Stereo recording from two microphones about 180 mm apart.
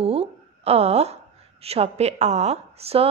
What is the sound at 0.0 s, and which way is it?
A woman's voice, 35° right (ahead or behind).